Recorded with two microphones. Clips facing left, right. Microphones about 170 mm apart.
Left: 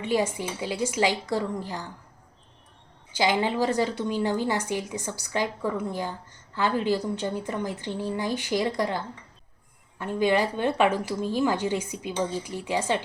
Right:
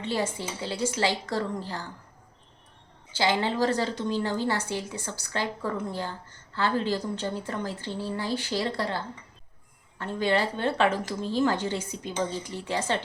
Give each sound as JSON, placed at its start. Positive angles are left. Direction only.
{"t": 0.0, "sound": "a woman's voice", "side_deg": 15}
{"t": 3.1, "sound": "a woman's voice", "side_deg": 15}